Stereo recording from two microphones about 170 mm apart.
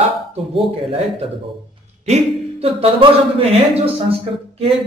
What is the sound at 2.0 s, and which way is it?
A woman's voice, 35° right (ahead or behind).